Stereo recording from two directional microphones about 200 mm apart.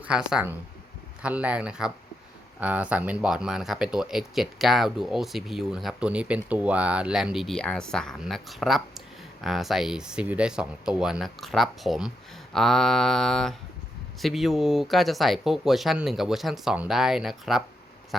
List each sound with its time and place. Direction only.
0.0 s speech: 5° right (ahead or behind)